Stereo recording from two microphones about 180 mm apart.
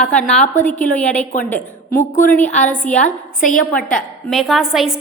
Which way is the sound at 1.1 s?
45° left (ahead or behind).